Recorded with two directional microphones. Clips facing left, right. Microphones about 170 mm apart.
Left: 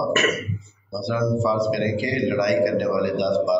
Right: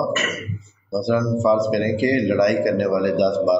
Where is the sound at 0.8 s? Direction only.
45° right (ahead or behind).